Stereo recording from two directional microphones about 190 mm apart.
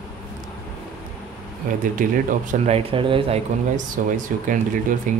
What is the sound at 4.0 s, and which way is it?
Speech, 45° right (ahead or behind).